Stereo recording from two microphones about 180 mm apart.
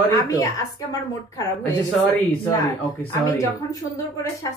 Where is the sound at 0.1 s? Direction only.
20° left (ahead or behind).